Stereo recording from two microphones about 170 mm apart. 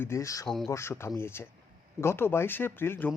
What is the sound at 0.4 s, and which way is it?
Speech, centre (ahead or behind).